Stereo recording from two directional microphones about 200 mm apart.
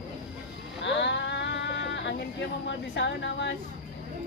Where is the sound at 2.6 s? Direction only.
60° left (ahead or behind).